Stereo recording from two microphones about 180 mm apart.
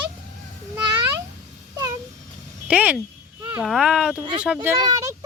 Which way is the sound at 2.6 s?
5° right (ahead or behind).